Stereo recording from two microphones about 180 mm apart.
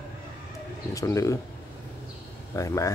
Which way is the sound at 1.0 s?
15° left (ahead or behind).